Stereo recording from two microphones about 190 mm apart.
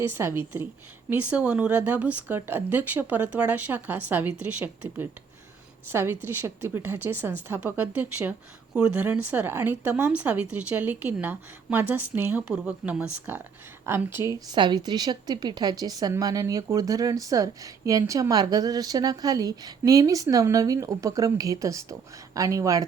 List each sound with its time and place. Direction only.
0.1 s a woman's voice: 10° right (ahead or behind)